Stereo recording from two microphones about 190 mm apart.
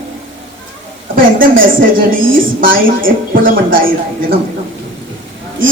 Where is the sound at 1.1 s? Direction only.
50° right (ahead or behind).